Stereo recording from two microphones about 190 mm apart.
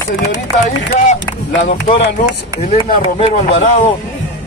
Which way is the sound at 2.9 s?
45° left (ahead or behind).